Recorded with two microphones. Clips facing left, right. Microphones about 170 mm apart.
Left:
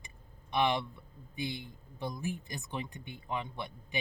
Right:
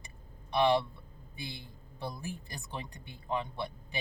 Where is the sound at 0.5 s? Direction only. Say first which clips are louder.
Right 3 dB; 20° left (ahead or behind).